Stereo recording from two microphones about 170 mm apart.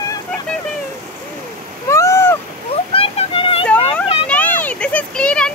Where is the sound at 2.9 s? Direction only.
35° left (ahead or behind).